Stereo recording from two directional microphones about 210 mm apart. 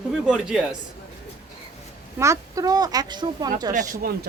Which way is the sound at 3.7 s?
40° right (ahead or behind).